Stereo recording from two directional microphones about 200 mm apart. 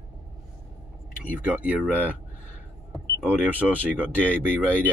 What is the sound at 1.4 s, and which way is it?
Speech, 5° right (ahead or behind).